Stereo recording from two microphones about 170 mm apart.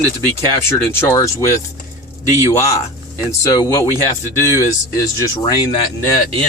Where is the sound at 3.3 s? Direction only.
20° left (ahead or behind).